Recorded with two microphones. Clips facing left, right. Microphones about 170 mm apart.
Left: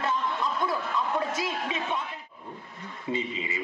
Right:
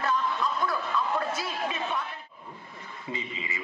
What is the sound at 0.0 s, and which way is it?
Chuckle, 20° left (ahead or behind).